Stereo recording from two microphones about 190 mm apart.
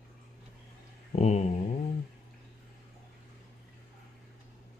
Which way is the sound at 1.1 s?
35° left (ahead or behind).